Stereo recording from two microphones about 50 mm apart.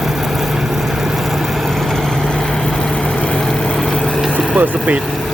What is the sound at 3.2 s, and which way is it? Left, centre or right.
Vehicle, left.